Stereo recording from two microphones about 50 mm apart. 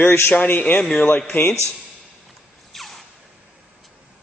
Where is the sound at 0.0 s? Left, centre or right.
Left.